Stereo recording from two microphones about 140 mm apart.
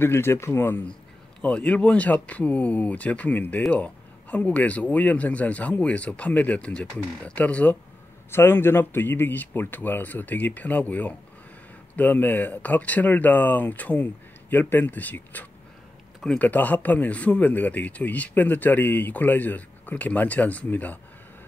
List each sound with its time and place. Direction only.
0.0 s speech: 15° left (ahead or behind)